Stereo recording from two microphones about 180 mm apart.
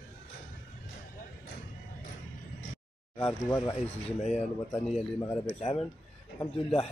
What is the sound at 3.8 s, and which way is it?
Speech, 40° left (ahead or behind).